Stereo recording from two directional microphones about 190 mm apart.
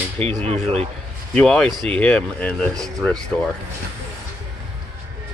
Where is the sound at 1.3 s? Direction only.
5° left (ahead or behind).